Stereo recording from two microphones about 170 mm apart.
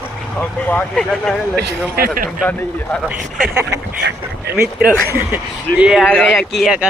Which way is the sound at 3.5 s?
15° right (ahead or behind).